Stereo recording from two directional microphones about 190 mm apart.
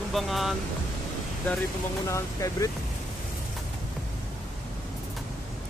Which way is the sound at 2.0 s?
15° left (ahead or behind).